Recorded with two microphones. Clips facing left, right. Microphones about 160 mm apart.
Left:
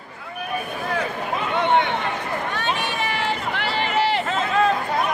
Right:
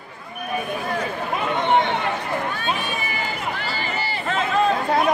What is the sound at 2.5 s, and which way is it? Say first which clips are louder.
Run: left 1 dB; 75° left (ahead or behind).